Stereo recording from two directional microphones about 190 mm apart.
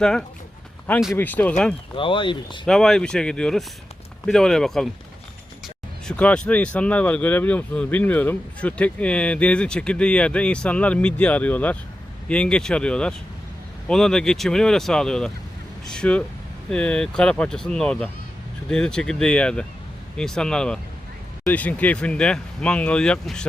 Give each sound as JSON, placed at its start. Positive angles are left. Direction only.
{"t": 0.0, "sound": "speech", "side_deg": 5}
{"t": 2.0, "sound": "speech", "side_deg": 25}
{"t": 2.6, "sound": "speech", "side_deg": 0}